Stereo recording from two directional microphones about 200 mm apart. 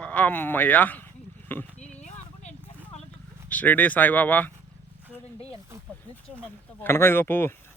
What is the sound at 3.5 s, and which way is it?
Speech, 5° left (ahead or behind).